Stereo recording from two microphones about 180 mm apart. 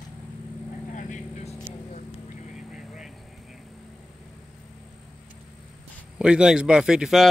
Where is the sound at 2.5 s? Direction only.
5° right (ahead or behind).